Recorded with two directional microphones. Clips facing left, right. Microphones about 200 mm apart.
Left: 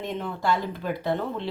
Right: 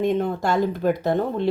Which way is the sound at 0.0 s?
50° right (ahead or behind).